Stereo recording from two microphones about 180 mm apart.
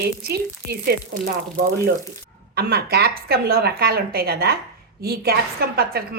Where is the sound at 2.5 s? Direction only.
60° right (ahead or behind).